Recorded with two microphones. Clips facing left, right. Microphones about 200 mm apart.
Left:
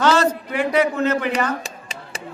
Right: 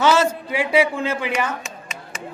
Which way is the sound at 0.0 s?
10° right (ahead or behind).